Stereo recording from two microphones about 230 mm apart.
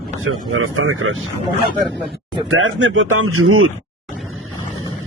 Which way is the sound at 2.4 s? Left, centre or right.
Right.